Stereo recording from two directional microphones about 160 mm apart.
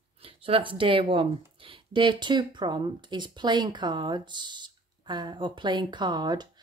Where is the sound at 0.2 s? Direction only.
35° right (ahead or behind).